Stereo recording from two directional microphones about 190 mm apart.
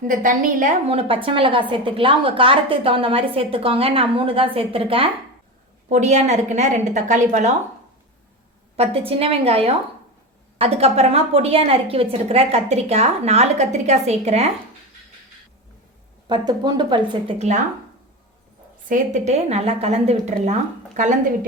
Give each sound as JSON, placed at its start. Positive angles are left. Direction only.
{"t": 0.1, "sound": "a woman's voice", "side_deg": -45}
{"t": 8.7, "sound": "a woman's voice", "side_deg": -30}
{"t": 16.2, "sound": "a woman's voice", "side_deg": -20}
{"t": 18.9, "sound": "a woman's voice", "side_deg": -40}